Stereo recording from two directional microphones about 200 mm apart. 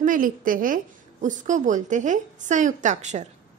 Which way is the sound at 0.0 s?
40° right (ahead or behind).